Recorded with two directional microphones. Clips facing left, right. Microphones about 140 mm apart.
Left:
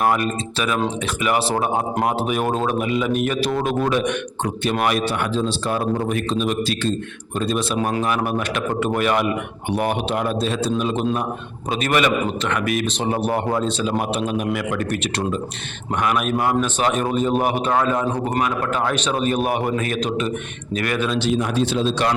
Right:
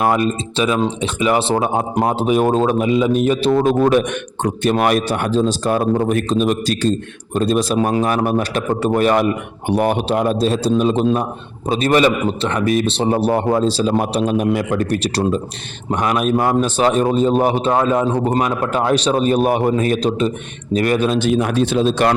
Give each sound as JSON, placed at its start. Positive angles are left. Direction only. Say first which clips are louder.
{"t": 0.5, "sound": "a man's voice", "louder": "right 4 dB", "side_deg": -25}